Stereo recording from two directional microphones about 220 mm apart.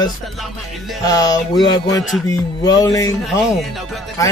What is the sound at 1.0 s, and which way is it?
Speech, 15° left (ahead or behind).